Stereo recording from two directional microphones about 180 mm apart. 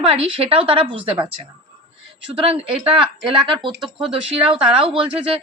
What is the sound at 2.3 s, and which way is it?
Speech, 30° right (ahead or behind).